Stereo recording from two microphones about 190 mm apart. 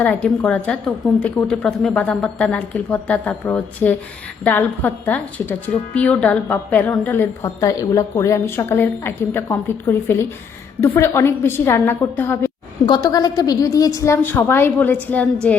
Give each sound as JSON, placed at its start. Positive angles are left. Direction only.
{"t": 0.0, "sound": "a woman's voice", "side_deg": 5}
{"t": 12.8, "sound": "a woman's voice", "side_deg": 20}